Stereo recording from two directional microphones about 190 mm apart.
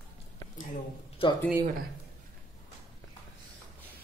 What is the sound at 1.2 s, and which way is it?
Speech, 30° left (ahead or behind).